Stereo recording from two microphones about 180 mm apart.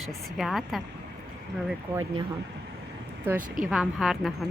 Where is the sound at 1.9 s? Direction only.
15° right (ahead or behind).